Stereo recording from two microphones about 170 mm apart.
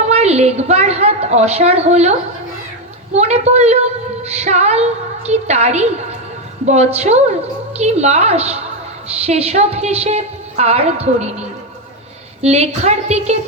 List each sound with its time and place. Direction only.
0.1 s a woman's voice: 40° right (ahead or behind)